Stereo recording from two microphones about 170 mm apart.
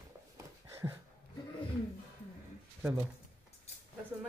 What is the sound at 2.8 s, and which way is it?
Speech, 10° right (ahead or behind).